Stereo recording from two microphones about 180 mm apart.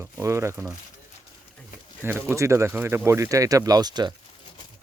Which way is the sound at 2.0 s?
15° right (ahead or behind).